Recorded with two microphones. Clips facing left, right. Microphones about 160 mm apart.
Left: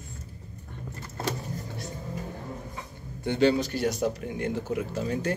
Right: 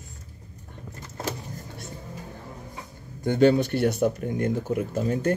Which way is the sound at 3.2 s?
50° right (ahead or behind).